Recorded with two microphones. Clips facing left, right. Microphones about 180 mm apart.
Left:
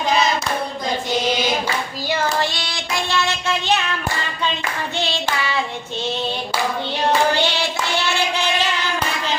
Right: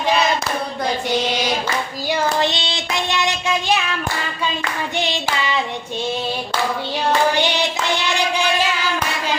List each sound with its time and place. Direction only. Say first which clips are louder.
2.4 s child singing: right 3 dB; 20° right (ahead or behind)
4.9 s hands: right 1 dB; 15° right (ahead or behind)
7.3 s hands: right 1 dB; 15° right (ahead or behind)